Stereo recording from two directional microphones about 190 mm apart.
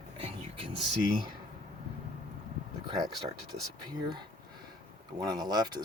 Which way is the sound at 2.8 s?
20° right (ahead or behind).